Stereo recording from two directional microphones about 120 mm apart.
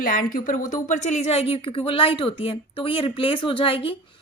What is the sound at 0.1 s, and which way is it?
A woman's voice, 90° left.